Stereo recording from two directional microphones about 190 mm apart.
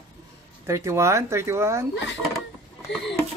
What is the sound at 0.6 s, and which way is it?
Speech, 15° right (ahead or behind).